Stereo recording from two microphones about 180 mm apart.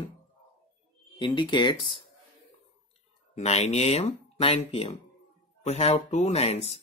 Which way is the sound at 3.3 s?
35° left (ahead or behind).